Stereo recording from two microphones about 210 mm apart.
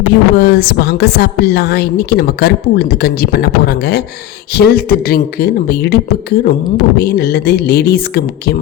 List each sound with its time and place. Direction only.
0.3 s a woman's voice: 50° left (ahead or behind)